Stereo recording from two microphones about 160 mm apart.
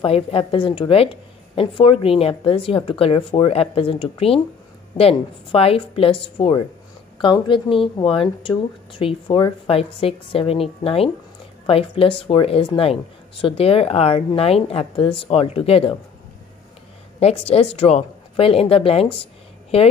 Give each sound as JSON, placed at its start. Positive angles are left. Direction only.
{"t": 0.0, "sound": "a woman's voice", "side_deg": 35}
{"t": 17.2, "sound": "a woman's voice", "side_deg": 40}